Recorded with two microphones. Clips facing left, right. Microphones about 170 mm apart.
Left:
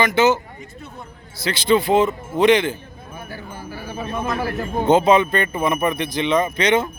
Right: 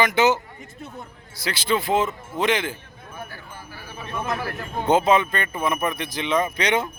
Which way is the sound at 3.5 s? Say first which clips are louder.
Left 8 dB; 40° left (ahead or behind).